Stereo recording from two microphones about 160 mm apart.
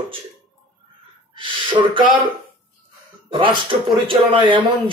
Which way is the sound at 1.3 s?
30° right (ahead or behind).